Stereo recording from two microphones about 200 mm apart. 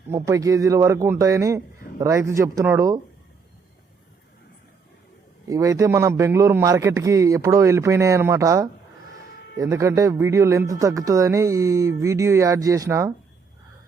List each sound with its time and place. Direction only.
0.1 s speech: 15° right (ahead or behind)
5.5 s speech: 15° right (ahead or behind)